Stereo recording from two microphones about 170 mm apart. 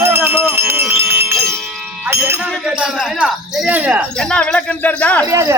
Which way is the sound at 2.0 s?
15° right (ahead or behind).